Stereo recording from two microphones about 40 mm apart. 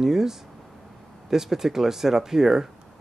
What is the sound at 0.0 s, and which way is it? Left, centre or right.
Speech, centre.